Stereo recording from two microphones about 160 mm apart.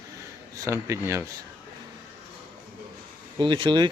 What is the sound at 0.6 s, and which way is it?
Speech, 15° right (ahead or behind).